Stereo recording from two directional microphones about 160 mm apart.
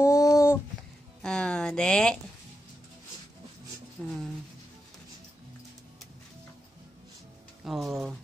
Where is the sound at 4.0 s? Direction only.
5° right (ahead or behind).